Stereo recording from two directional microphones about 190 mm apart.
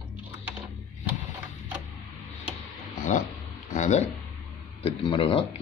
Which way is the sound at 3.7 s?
40° left (ahead or behind).